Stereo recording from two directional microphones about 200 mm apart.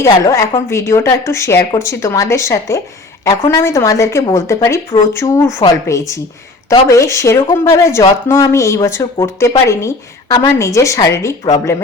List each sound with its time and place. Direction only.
0.0 s a woman's voice: 15° left (ahead or behind)